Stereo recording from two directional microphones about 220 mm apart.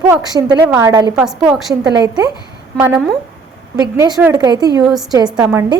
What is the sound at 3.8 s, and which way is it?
A woman's voice, 15° right (ahead or behind).